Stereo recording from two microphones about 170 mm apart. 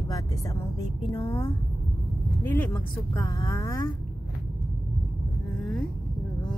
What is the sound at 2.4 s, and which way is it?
Speech, 10° left (ahead or behind).